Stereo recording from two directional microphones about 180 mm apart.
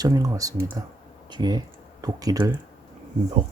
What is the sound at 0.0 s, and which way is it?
Speech, 20° right (ahead or behind).